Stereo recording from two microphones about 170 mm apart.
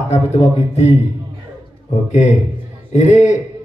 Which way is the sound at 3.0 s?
45° left (ahead or behind).